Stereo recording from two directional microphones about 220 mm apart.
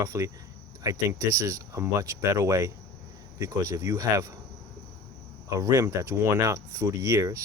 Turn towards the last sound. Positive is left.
turn(degrees=-15)  # may be behind; listen again after turning